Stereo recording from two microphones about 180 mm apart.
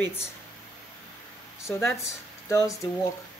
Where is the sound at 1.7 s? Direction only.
10° left (ahead or behind).